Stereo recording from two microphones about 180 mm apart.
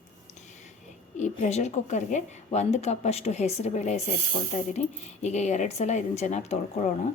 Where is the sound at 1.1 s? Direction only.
40° left (ahead or behind).